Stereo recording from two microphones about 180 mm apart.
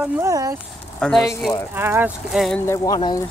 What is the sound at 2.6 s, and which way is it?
Speech, 20° left (ahead or behind).